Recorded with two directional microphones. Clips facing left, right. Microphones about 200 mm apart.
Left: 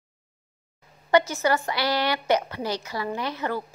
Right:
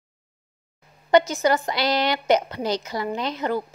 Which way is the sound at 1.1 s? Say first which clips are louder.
Right 3 dB; 20° right (ahead or behind).